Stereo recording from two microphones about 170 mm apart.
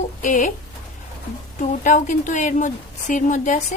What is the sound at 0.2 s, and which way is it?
Speech, 50° left (ahead or behind).